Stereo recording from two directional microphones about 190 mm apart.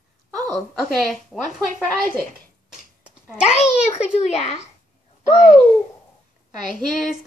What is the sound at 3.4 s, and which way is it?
A child's voice, 35° left (ahead or behind).